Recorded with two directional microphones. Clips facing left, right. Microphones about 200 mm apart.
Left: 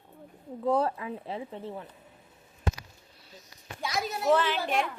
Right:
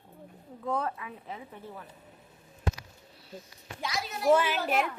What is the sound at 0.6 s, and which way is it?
Speech, 35° left (ahead or behind).